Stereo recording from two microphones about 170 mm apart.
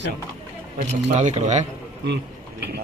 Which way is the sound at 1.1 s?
45° right (ahead or behind).